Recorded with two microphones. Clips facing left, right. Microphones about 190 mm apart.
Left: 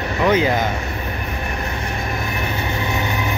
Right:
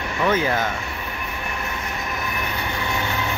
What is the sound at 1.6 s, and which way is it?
Train, 30° left (ahead or behind).